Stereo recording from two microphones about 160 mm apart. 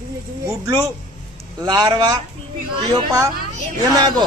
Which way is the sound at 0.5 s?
20° right (ahead or behind).